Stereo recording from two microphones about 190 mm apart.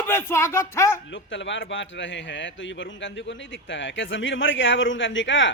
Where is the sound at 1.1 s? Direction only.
75° left (ahead or behind).